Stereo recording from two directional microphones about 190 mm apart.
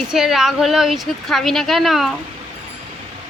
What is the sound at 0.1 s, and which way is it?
A woman's voice, centre (ahead or behind).